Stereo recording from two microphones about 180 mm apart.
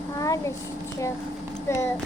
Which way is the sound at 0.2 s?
15° left (ahead or behind).